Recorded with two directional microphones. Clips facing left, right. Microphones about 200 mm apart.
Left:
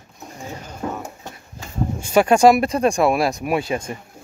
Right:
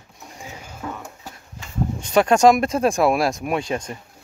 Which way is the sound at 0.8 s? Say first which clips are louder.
Left 5 dB; 35° left (ahead or behind).